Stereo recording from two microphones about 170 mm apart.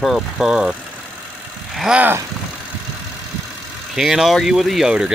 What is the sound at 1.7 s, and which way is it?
Vehicle, 5° right (ahead or behind).